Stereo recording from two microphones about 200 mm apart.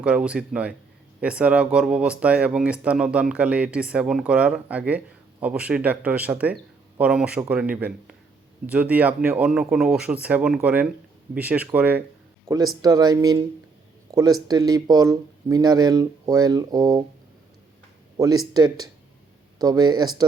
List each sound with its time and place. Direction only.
0.0 s speech: 5° right (ahead or behind)
12.5 s speech: 20° right (ahead or behind)
18.2 s speech: 20° right (ahead or behind)